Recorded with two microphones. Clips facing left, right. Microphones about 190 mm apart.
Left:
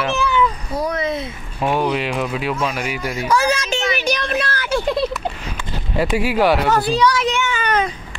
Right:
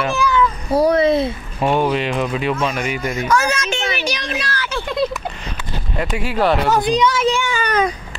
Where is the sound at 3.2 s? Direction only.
30° left (ahead or behind).